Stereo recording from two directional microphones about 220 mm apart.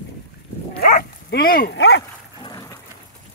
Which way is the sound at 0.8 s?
45° left (ahead or behind).